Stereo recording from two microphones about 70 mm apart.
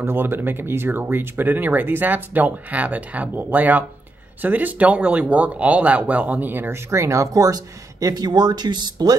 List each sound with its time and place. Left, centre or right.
0.0 s speech: right
6.9 s speech: right